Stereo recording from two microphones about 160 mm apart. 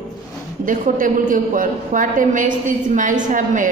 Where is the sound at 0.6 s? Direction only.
55° right (ahead or behind).